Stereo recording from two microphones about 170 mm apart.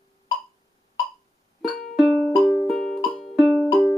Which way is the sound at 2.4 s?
25° left (ahead or behind).